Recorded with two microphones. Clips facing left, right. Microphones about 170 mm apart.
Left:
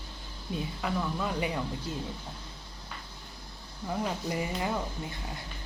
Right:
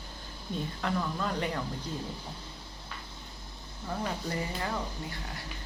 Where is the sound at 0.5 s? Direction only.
5° left (ahead or behind).